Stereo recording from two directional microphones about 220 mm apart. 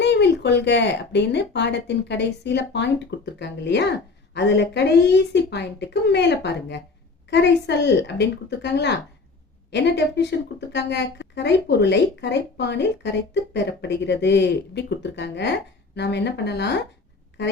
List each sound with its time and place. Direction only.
0.0 s speech: 50° left (ahead or behind)